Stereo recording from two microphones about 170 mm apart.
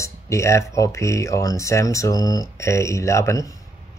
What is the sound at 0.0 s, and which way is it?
Speech, 15° left (ahead or behind).